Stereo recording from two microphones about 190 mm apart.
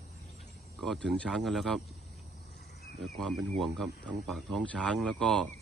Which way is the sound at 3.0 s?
Centre (ahead or behind).